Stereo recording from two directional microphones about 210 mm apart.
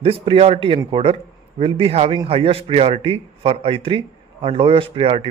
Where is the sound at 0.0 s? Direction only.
25° right (ahead or behind).